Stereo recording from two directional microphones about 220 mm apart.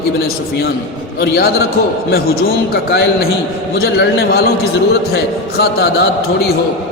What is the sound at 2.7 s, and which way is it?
A man's voice, 45° left (ahead or behind).